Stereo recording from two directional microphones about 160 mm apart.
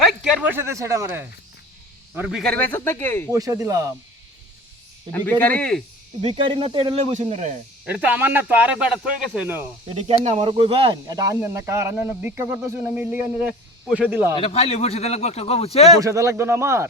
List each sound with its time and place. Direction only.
0.0 s a man's voice: centre (ahead or behind)
2.4 s speech: 10° left (ahead or behind)
3.3 s speech: 20° right (ahead or behind)
5.1 s speech: 10° left (ahead or behind)
6.2 s speech: 30° right (ahead or behind)
7.9 s speech: 10° right (ahead or behind)
9.9 s speech: 45° right (ahead or behind)
11.2 s speech: 20° right (ahead or behind)
14.3 s speech: 35° left (ahead or behind)
16.0 s speech: 20° right (ahead or behind)